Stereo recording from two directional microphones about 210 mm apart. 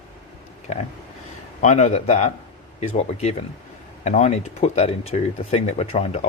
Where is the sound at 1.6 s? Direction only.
35° left (ahead or behind).